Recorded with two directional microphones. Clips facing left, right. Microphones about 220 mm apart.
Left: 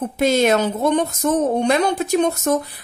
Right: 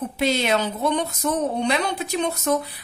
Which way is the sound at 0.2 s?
45° left (ahead or behind).